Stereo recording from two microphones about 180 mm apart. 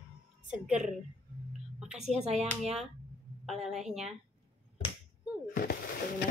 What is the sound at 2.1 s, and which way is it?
Speech, 35° right (ahead or behind).